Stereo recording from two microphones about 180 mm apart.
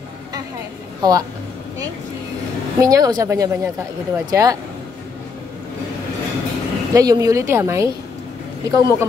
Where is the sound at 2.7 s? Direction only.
20° right (ahead or behind).